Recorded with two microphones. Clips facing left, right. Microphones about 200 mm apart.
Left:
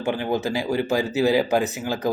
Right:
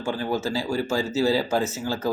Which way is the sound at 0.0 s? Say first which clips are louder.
Left 2 dB; 20° left (ahead or behind).